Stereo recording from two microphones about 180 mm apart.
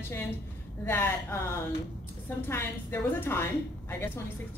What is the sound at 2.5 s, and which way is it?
A woman's voice, 15° left (ahead or behind).